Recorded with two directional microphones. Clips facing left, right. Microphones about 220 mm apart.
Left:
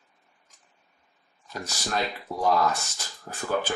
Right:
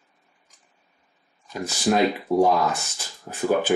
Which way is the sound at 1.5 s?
15° right (ahead or behind).